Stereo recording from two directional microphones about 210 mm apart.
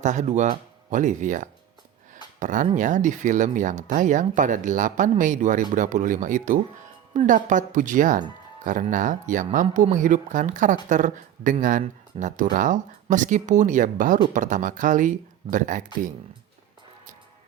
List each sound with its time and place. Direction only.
0.0 s speech: 35° right (ahead or behind)